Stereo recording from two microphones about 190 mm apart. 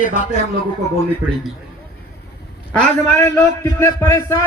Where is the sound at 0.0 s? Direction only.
40° left (ahead or behind).